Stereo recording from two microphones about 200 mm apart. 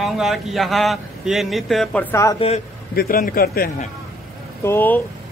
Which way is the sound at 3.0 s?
45° left (ahead or behind).